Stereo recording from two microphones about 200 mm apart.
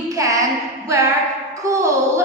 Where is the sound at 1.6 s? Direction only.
15° right (ahead or behind).